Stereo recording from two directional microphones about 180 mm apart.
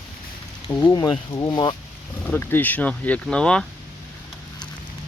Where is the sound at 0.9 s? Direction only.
25° left (ahead or behind).